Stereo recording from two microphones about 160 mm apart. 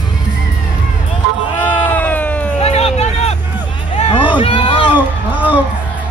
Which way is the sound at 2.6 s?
40° left (ahead or behind).